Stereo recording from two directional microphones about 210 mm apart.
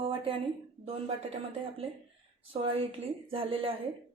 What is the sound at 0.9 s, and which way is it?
A woman's voice, 30° right (ahead or behind).